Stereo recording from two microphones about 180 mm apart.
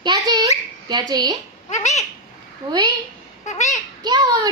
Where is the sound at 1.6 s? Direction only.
40° left (ahead or behind).